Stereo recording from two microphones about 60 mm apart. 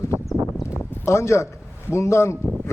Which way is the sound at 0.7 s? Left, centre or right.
Left.